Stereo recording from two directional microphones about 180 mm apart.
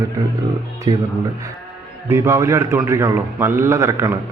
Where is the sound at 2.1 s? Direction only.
15° right (ahead or behind).